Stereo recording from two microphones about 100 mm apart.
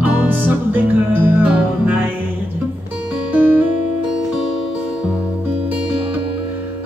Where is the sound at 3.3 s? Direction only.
20° right (ahead or behind).